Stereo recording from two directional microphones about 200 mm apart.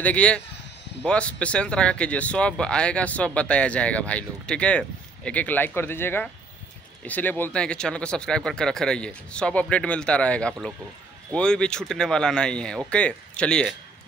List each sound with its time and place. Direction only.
0.0 s speech: 5° left (ahead or behind)